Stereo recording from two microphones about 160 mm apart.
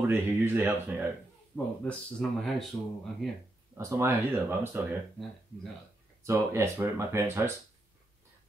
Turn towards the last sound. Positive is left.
turn(degrees=-15)  # may be behind; listen again after turning